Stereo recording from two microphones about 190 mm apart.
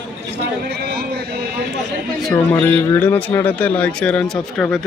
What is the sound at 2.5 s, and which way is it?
Speech, 10° left (ahead or behind).